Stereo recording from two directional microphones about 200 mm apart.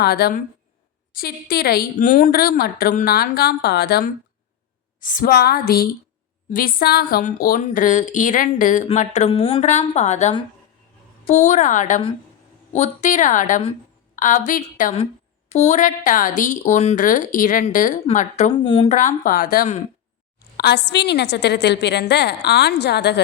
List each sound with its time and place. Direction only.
0.0 s a woman's voice: 50° left (ahead or behind)
18.6 s a woman's voice: 30° left (ahead or behind)
20.6 s a woman's voice: 55° left (ahead or behind)